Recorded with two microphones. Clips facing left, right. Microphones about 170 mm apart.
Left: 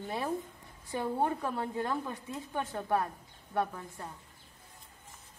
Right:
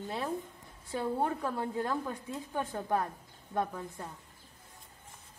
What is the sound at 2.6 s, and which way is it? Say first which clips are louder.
Speech: even; 15° right (ahead or behind).